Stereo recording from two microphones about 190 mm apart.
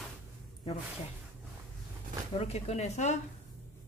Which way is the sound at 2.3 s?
35° left (ahead or behind).